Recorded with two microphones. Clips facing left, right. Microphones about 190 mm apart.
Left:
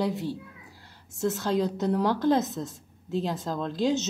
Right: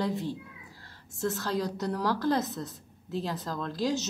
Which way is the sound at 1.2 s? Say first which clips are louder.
Left 4 dB; 20° left (ahead or behind).